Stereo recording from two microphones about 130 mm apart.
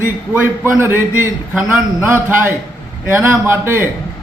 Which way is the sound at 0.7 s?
15° right (ahead or behind).